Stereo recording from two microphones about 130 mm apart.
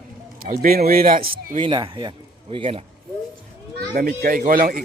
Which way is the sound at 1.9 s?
40° right (ahead or behind).